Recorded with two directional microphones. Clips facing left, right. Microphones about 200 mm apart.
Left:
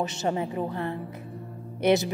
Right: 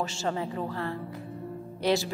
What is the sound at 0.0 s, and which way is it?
A woman's voice, 20° left (ahead or behind).